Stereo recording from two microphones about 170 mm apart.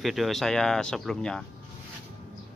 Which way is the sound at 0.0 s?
Centre (ahead or behind).